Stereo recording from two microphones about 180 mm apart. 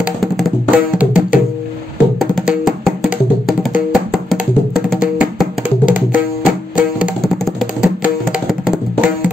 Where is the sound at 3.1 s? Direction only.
45° left (ahead or behind).